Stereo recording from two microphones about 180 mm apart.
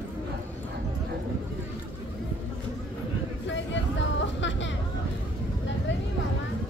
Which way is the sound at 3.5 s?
90° left.